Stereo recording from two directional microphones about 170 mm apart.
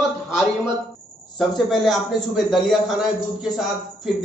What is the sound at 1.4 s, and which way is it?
A man's voice, centre (ahead or behind).